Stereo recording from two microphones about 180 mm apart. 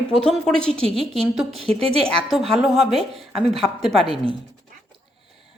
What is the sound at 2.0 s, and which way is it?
A woman's voice, centre (ahead or behind).